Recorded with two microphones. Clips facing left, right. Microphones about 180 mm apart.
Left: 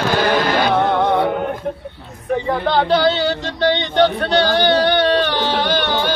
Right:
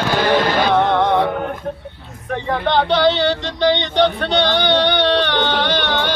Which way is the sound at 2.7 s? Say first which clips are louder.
Right 1 dB; 5° left (ahead or behind).